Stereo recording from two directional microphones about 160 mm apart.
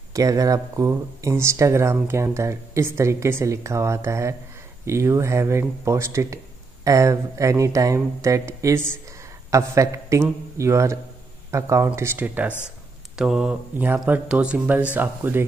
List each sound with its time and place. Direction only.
0.1 s speech: 20° right (ahead or behind)